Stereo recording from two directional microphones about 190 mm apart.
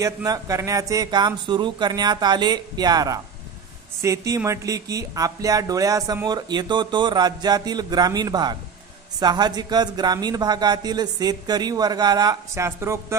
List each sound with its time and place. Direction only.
0.0 s speech: 15° right (ahead or behind)